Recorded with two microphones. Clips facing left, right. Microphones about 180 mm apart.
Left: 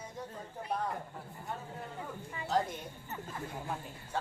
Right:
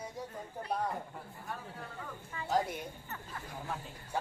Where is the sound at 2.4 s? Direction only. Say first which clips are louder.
Even; 10° right (ahead or behind).